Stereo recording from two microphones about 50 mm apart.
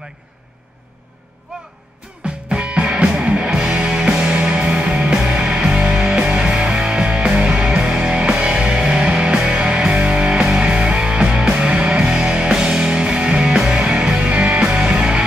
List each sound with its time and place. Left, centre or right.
2.2 s music: right